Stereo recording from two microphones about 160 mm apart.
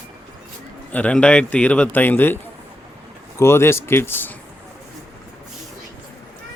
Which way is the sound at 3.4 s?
15° left (ahead or behind).